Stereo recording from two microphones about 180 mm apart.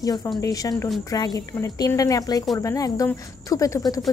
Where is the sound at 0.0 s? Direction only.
20° left (ahead or behind).